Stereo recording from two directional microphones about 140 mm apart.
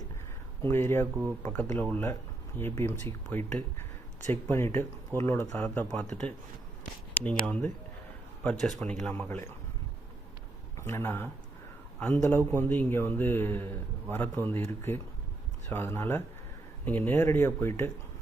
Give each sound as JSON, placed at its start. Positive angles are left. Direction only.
{"t": 0.6, "sound": "a man's voice", "side_deg": 15}
{"t": 5.9, "sound": "speech", "side_deg": 5}
{"t": 7.4, "sound": "a man's voice", "side_deg": 10}
{"t": 10.8, "sound": "a man's voice", "side_deg": 20}